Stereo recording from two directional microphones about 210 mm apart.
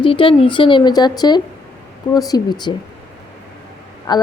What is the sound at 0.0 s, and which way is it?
A woman's voice, 25° left (ahead or behind).